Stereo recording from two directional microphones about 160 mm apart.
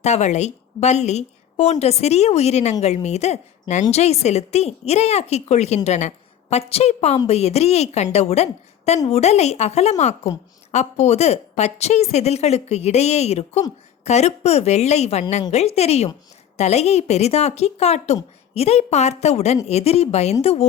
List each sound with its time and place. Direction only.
0.0 s a woman's voice: 45° left (ahead or behind)